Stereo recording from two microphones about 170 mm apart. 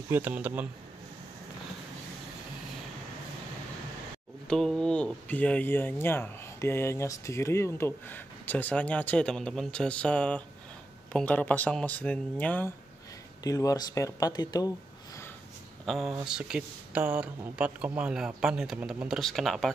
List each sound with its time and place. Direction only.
0.1 s speech: 10° right (ahead or behind)
4.5 s speech: 5° left (ahead or behind)
13.4 s speech: 20° left (ahead or behind)
15.8 s speech: centre (ahead or behind)